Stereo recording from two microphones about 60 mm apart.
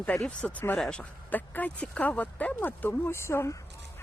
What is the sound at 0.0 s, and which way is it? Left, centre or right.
Speech, left.